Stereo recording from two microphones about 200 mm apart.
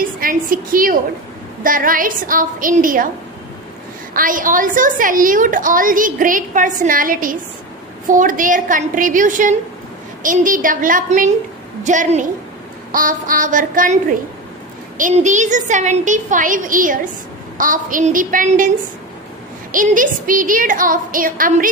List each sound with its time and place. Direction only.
0.2 s a woman's voice: 45° right (ahead or behind)
4.1 s a woman's voice: 45° right (ahead or behind)
15.0 s a woman's voice: 40° right (ahead or behind)
19.7 s a woman's voice: 40° right (ahead or behind)